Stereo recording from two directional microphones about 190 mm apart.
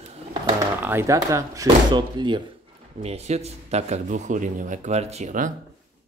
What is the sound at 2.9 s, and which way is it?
Speech, 35° right (ahead or behind).